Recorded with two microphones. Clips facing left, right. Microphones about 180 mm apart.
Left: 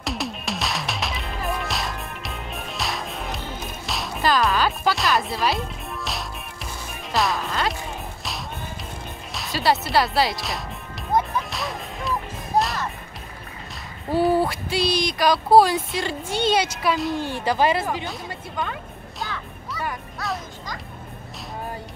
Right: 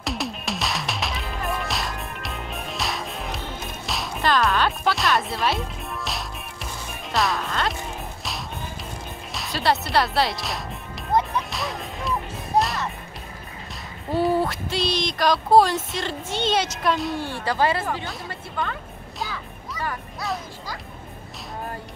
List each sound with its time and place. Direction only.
0.0 s music: centre (ahead or behind)
9.3 s a sound: centre (ahead or behind)
11.1 s music: centre (ahead or behind)
14.1 s a sound: centre (ahead or behind)
17.3 s speech: 15° left (ahead or behind)
18.6 s music: centre (ahead or behind)